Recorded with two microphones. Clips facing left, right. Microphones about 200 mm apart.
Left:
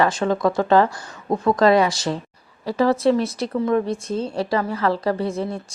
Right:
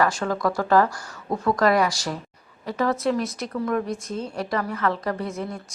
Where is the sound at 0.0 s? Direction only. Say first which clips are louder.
Left 4 dB; 25° left (ahead or behind).